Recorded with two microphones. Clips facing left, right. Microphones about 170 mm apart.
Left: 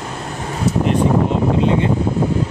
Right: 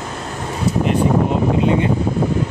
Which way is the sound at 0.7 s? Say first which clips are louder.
Left 1 dB; centre (ahead or behind).